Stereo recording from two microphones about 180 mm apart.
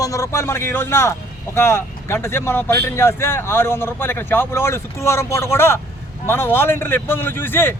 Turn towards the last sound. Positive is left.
turn(degrees=10)  # may be behind; listen again after turning